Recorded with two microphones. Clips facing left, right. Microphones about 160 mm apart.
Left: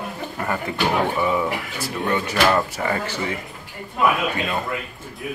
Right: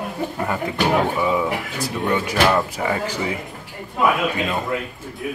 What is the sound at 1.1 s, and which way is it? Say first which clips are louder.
Speech: right 1 dB; 5° right (ahead or behind).